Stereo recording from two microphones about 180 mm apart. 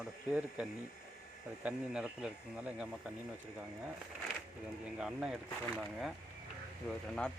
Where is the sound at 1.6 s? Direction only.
5° right (ahead or behind).